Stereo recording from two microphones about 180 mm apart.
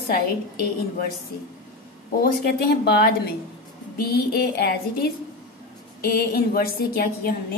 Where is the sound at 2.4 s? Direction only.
60° left (ahead or behind).